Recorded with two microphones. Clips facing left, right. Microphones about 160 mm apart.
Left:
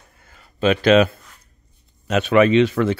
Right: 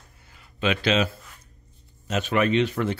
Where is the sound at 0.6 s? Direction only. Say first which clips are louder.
Left 8 dB; 40° left (ahead or behind).